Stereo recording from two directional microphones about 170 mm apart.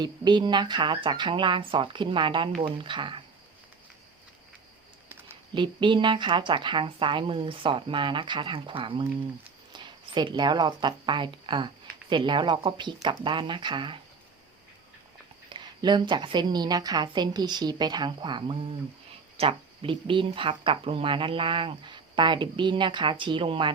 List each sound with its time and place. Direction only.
0.0 s speech: 25° right (ahead or behind)
5.5 s speech: 30° right (ahead or behind)
15.4 s speech: 25° right (ahead or behind)